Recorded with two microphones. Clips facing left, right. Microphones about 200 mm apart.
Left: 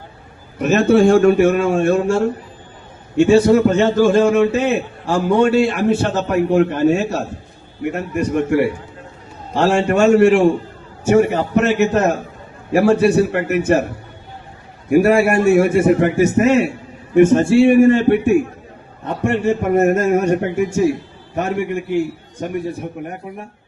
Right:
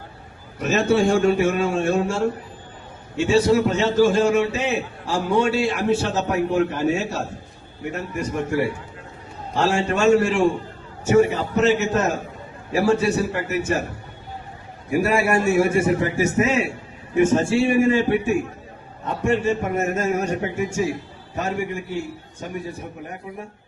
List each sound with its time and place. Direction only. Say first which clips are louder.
0.6 s a man's voice: left 6 dB; 55° left (ahead or behind)
9.6 s a man's voice: left 6 dB; 55° left (ahead or behind)
14.8 s a man's voice: left 7 dB; 55° left (ahead or behind)